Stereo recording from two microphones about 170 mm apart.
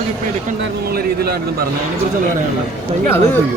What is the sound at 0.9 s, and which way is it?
Speech, 65° right (ahead or behind).